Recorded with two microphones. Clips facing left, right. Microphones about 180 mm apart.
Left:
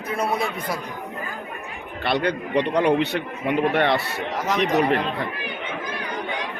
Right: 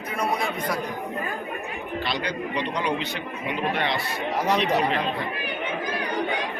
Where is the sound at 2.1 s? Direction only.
60° left (ahead or behind).